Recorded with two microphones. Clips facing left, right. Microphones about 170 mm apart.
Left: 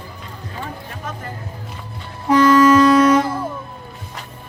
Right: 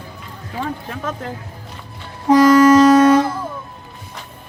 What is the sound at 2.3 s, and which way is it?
Music, 40° right (ahead or behind).